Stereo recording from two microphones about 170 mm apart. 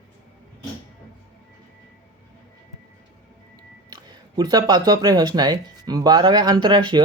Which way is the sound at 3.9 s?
25° right (ahead or behind).